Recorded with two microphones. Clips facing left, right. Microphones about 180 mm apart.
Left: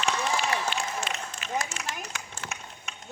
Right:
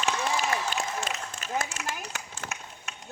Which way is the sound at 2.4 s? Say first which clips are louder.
Right 1 dB; 45° right (ahead or behind).